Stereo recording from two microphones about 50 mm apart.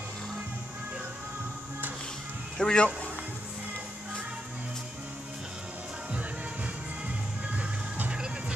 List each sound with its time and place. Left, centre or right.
2.5 s a man's voice: centre
8.1 s music: centre